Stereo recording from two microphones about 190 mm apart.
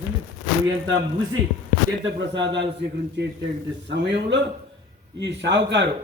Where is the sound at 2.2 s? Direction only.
70° right (ahead or behind).